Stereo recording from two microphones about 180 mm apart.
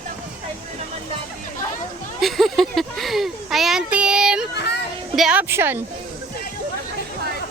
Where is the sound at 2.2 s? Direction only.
Centre (ahead or behind).